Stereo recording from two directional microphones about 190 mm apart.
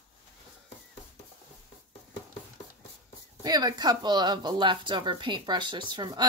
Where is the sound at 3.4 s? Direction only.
20° right (ahead or behind).